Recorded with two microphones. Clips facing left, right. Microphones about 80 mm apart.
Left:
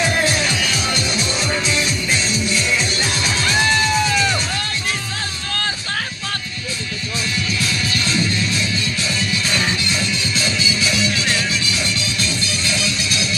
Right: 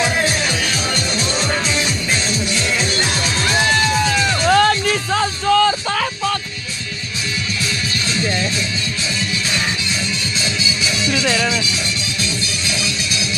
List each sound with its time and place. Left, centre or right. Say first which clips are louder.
4.5 s music: right 12 dB; right